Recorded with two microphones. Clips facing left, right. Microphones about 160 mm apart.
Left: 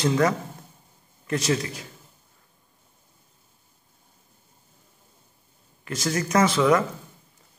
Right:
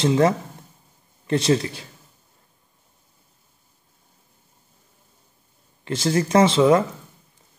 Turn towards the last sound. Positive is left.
turn(degrees=-25)  # may be behind; listen again after turning